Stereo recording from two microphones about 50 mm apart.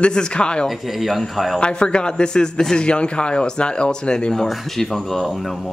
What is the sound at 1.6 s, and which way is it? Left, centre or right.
A man's voice, centre.